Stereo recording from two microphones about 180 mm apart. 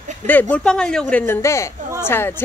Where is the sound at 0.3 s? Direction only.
10° left (ahead or behind).